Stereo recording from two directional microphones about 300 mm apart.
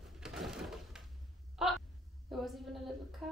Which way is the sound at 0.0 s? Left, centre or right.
Centre.